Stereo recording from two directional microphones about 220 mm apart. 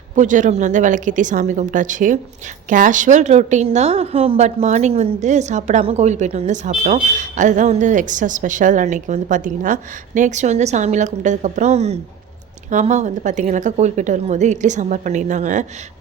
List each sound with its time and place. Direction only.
0.2 s a woman's voice: 35° right (ahead or behind)